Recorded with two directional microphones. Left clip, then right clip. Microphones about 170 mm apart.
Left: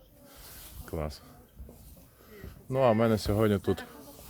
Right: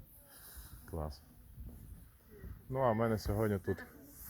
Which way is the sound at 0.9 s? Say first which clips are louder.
Left 8 dB; 15° left (ahead or behind).